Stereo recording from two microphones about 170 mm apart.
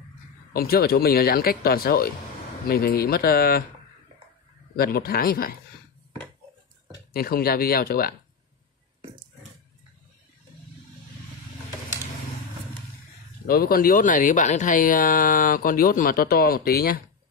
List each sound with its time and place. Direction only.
0.5 s speech: 60° left (ahead or behind)
4.7 s speech: 60° left (ahead or behind)
7.1 s speech: 60° left (ahead or behind)
13.5 s speech: 60° left (ahead or behind)